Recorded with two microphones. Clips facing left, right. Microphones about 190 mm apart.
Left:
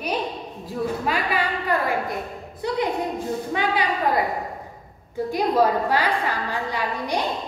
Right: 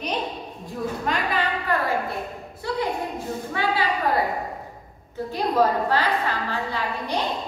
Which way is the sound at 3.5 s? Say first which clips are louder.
Even; 20° left (ahead or behind).